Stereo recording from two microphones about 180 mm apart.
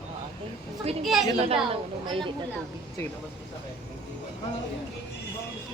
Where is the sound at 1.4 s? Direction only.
30° right (ahead or behind).